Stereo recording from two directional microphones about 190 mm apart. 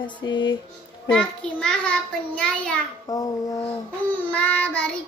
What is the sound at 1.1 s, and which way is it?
A child's voice, 5° left (ahead or behind).